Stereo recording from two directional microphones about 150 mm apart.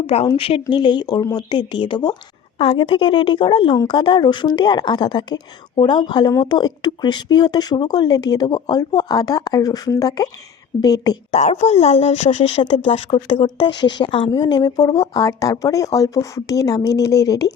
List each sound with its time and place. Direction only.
0.3 s a woman's voice: 40° left (ahead or behind)
11.3 s a woman's voice: 50° left (ahead or behind); by 17.5 s 25° left (ahead or behind)